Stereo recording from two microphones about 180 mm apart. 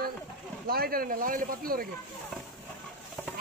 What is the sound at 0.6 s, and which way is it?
Speech, 55° right (ahead or behind).